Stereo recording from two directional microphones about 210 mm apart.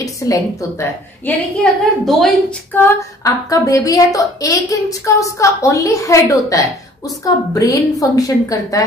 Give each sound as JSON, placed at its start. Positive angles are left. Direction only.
{"t": 0.0, "sound": "a woman's voice", "side_deg": 15}